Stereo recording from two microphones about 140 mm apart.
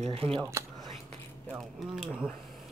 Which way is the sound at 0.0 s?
40° right (ahead or behind).